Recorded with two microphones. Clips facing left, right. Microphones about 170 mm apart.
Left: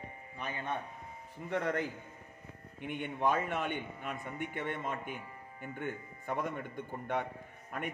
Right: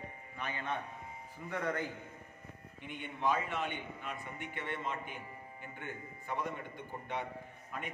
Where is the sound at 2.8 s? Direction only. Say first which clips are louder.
Left 4 dB; 55° left (ahead or behind).